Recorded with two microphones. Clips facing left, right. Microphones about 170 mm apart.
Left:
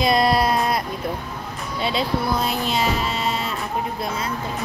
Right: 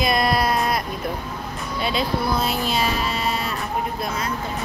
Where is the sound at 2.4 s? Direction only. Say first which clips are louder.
Even; 20° left (ahead or behind).